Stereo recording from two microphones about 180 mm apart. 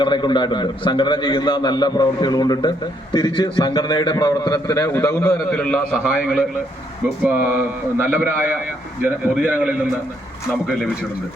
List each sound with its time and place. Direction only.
0.0 s a man's voice: 25° left (ahead or behind)
5.5 s a man's voice: 5° left (ahead or behind)
5.9 s a man's voice: 5° right (ahead or behind)
7.5 s a man's voice: 10° right (ahead or behind)